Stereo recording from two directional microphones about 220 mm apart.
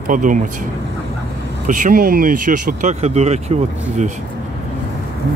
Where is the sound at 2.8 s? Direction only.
30° right (ahead or behind).